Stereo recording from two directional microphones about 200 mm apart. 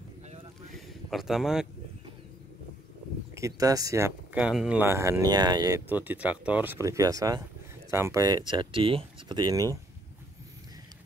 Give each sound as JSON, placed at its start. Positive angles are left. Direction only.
{"t": 0.7, "sound": "a sound", "side_deg": 0}
{"t": 3.3, "sound": "speech", "side_deg": -15}
{"t": 5.9, "sound": "speech", "side_deg": -10}